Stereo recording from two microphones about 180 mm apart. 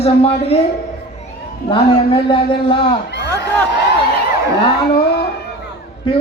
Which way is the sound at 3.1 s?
70° left (ahead or behind).